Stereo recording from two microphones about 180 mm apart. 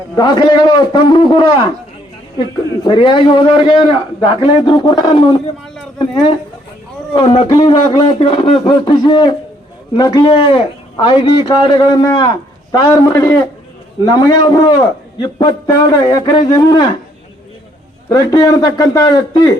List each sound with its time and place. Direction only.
0.2 s a man's voice: 25° left (ahead or behind)
2.8 s a man's voice: 25° left (ahead or behind)
7.1 s a man's voice: 30° left (ahead or behind)
18.1 s a man's voice: 20° left (ahead or behind)